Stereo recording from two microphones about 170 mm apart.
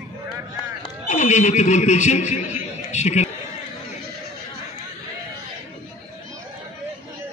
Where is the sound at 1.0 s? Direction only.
45° left (ahead or behind).